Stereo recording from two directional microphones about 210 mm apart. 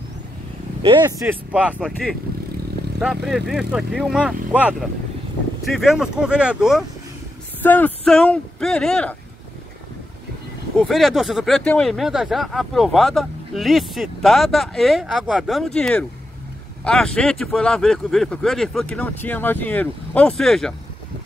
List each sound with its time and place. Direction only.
0.8 s speech: 15° right (ahead or behind)
7.6 s speech: 10° left (ahead or behind)
10.8 s speech: centre (ahead or behind)